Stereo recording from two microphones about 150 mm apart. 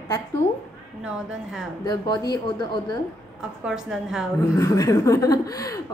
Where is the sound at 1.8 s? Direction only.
30° left (ahead or behind).